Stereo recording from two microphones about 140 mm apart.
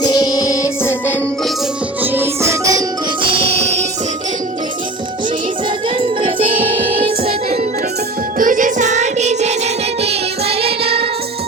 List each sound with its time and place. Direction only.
0.0 s music: 30° left (ahead or behind)
2.0 s music: 15° right (ahead or behind)
3.2 s music: 40° right (ahead or behind)
6.0 s music: 40° right (ahead or behind)
8.4 s music: 70° right (ahead or behind); by 11.0 s 45° right (ahead or behind)